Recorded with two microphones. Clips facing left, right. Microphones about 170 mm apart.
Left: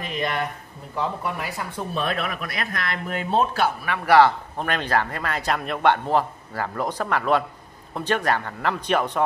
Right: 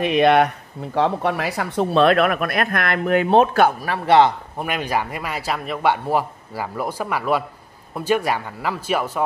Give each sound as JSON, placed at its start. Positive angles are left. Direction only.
{"t": 0.0, "sound": "speech", "side_deg": -75}
{"t": 3.8, "sound": "a man's voice", "side_deg": -30}
{"t": 4.6, "sound": "speech", "side_deg": -10}